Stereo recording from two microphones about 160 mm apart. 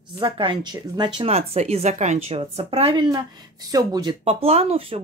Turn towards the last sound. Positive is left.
turn(degrees=-35)  # may be behind; listen again after turning